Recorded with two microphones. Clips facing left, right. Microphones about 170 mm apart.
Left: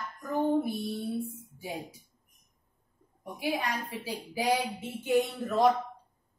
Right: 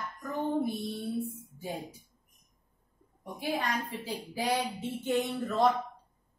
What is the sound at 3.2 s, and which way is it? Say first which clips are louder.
A woman's voice: left 1 dB; 10° left (ahead or behind).